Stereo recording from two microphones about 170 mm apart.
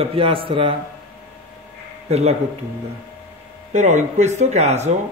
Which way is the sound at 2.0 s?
40° right (ahead or behind).